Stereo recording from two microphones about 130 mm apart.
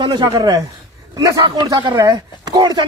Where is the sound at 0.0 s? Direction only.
30° right (ahead or behind).